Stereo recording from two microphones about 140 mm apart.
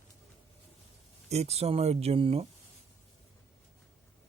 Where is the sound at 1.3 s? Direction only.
50° right (ahead or behind).